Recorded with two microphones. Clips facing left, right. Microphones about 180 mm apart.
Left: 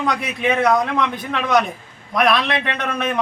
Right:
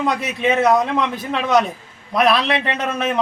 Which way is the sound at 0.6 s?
5° right (ahead or behind).